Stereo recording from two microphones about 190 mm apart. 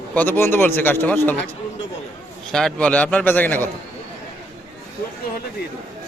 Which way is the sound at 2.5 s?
5° left (ahead or behind).